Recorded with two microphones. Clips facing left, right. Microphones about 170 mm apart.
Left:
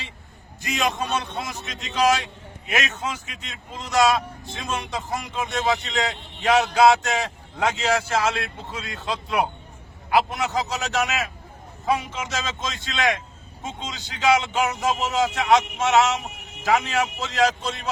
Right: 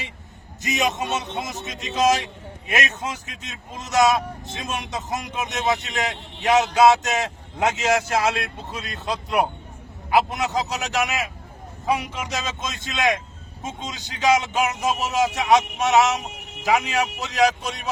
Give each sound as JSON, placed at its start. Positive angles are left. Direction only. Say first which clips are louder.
{"t": 0.6, "sound": "speech", "louder": "right 1 dB", "side_deg": -20}
{"t": 12.3, "sound": "speech", "louder": "left 1 dB", "side_deg": -15}